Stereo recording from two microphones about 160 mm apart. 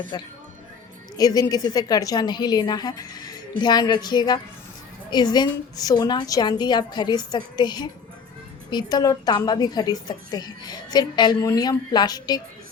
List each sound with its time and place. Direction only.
0.1 s a woman's voice: 25° left (ahead or behind)